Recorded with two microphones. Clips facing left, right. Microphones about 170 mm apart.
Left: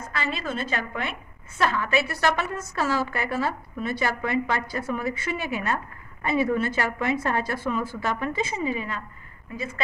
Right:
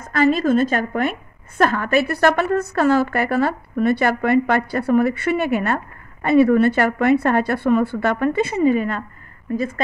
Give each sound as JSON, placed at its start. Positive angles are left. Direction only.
{"t": 0.1, "sound": "a woman's voice", "side_deg": -50}